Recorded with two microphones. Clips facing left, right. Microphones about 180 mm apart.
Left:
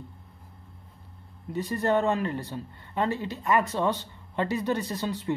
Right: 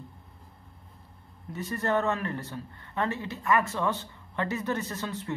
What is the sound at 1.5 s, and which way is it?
Speech, 15° left (ahead or behind).